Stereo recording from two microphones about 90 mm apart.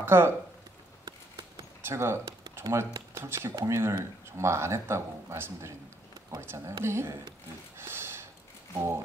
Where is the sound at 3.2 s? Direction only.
30° right (ahead or behind).